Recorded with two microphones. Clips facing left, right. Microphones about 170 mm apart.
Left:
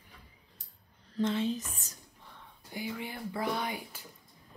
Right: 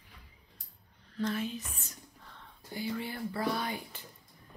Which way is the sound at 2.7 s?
15° left (ahead or behind).